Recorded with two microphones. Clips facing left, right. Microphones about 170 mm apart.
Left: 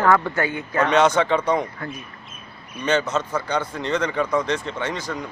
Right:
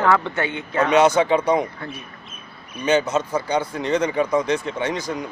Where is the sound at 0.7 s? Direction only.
10° right (ahead or behind).